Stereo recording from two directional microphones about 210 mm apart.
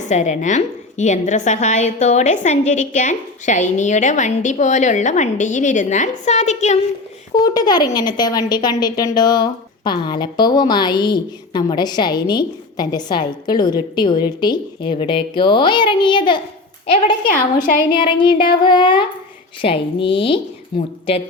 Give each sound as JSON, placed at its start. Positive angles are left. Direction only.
{"t": 0.1, "sound": "a woman's voice", "side_deg": 35}
{"t": 7.3, "sound": "a woman's voice", "side_deg": 20}
{"t": 17.2, "sound": "a woman's voice", "side_deg": 40}
{"t": 17.9, "sound": "a woman's voice", "side_deg": 25}